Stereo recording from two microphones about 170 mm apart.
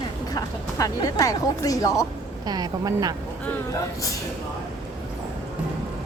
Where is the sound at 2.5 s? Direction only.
20° right (ahead or behind).